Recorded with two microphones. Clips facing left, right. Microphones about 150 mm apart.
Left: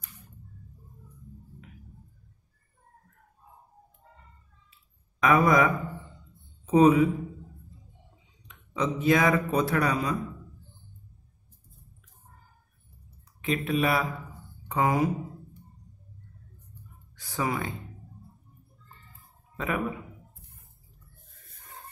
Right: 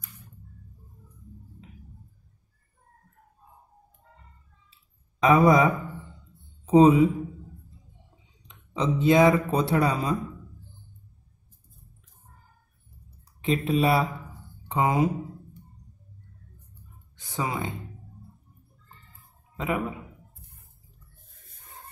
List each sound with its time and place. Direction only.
5.2 s speech: 30° right (ahead or behind)
8.5 s speech: 30° right (ahead or behind)
13.4 s speech: 30° right (ahead or behind)
17.2 s speech: 20° right (ahead or behind)
19.5 s a man's voice: 20° right (ahead or behind)